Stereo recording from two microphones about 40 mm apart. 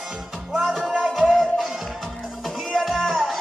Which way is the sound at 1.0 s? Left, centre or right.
Centre.